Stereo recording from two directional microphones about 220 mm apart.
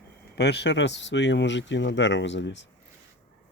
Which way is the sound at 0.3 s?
50° left (ahead or behind).